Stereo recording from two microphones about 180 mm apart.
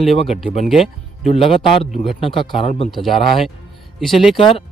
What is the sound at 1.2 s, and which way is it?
Speech, 35° left (ahead or behind).